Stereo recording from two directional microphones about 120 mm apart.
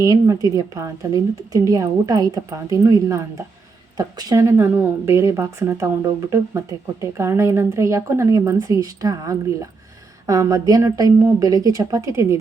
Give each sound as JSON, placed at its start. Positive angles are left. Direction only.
{"t": 0.0, "sound": "speech", "side_deg": -30}